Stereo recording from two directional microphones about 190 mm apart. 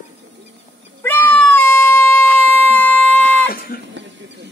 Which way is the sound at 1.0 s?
10° left (ahead or behind).